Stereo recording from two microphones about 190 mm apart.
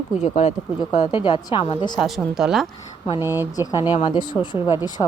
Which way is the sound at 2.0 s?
Centre (ahead or behind).